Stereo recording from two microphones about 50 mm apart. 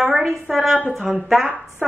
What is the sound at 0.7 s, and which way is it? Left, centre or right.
Speech, centre.